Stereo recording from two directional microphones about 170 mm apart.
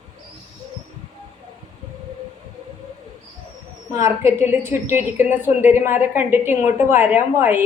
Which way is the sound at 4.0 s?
15° right (ahead or behind).